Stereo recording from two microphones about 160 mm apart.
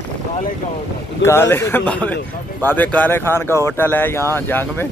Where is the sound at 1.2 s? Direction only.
15° left (ahead or behind).